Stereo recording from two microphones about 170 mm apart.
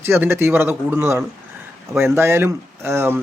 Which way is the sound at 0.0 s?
15° right (ahead or behind).